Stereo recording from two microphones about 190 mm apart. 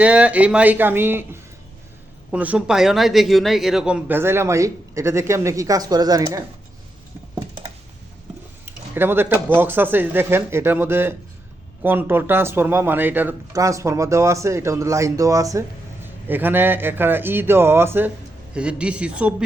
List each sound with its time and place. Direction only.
0.0 s speech: 5° right (ahead or behind)
8.6 s speech: 10° right (ahead or behind)